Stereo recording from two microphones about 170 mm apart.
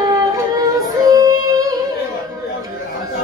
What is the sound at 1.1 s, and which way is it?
Singing, 20° right (ahead or behind).